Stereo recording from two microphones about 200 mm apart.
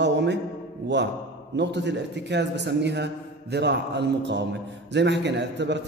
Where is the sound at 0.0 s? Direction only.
60° right (ahead or behind).